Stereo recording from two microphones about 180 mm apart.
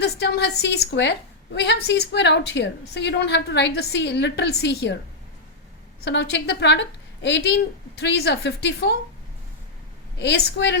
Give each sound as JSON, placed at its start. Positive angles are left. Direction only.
{"t": 0.0, "sound": "a woman's voice", "side_deg": 65}
{"t": 6.1, "sound": "a woman's voice", "side_deg": 70}
{"t": 10.2, "sound": "a woman's voice", "side_deg": 65}